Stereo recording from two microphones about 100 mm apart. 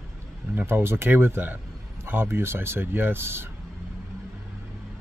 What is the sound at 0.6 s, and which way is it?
Speech, 20° right (ahead or behind).